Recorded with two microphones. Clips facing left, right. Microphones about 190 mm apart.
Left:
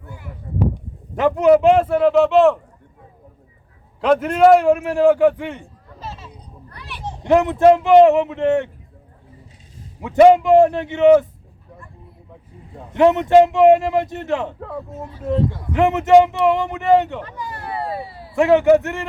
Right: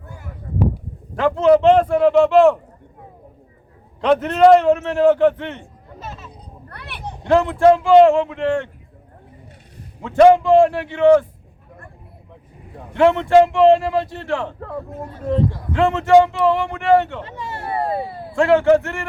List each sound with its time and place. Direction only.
1.1 s speech: 15° left (ahead or behind)
1.5 s speech: 5° left (ahead or behind)
4.0 s a man's voice: 5° left (ahead or behind)
6.0 s a sound: 30° left (ahead or behind)
6.7 s children playing: 60° right (ahead or behind)
7.0 s speech: 25° left (ahead or behind)
10.0 s a man's voice: 15° left (ahead or behind)
12.9 s speech: 20° left (ahead or behind)
15.2 s speech: centre (ahead or behind)
15.7 s speech: 20° left (ahead or behind)
17.2 s a sound: 25° right (ahead or behind)
18.1 s a sound: 55° right (ahead or behind)
18.3 s a man's voice: 15° left (ahead or behind)